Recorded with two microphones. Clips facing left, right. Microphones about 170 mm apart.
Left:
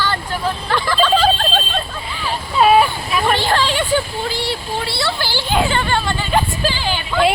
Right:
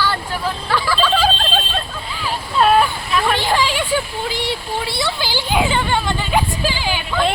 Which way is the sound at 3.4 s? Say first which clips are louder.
Left 1 dB; 10° right (ahead or behind).